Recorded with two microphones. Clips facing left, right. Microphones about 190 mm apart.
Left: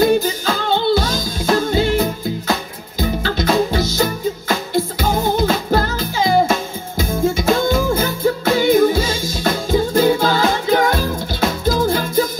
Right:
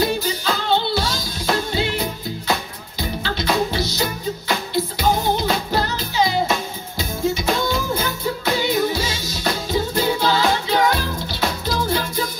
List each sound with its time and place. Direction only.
0.0 s music: 45° left (ahead or behind)